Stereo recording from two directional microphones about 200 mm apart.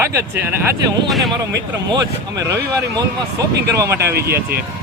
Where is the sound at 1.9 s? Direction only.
20° right (ahead or behind).